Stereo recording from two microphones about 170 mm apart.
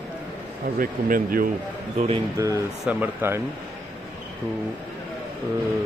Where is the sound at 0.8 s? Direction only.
55° right (ahead or behind).